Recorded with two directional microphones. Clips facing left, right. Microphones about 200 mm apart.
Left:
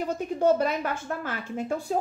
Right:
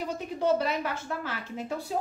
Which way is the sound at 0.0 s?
50° left (ahead or behind).